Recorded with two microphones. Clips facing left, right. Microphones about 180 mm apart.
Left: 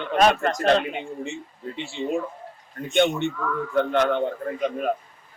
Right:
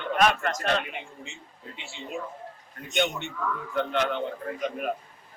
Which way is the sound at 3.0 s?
55° left (ahead or behind).